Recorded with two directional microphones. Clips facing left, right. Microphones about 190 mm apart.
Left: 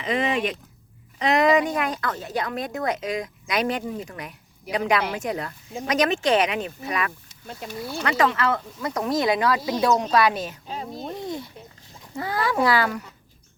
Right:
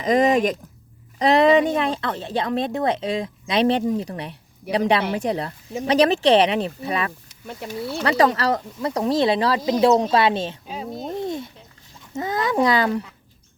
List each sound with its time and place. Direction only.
0.0 s speech: 40° right (ahead or behind)
10.7 s speech: 5° right (ahead or behind)
11.2 s a sound: 20° right (ahead or behind)
12.1 s speech: 20° right (ahead or behind)